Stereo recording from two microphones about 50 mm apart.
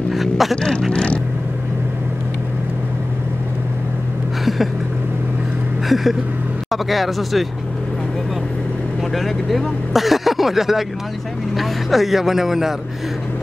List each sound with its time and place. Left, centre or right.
0.1 s vehicle: centre
0.6 s vehicle: centre
5.9 s a sound: centre
6.7 s speech: centre
9.1 s speech: centre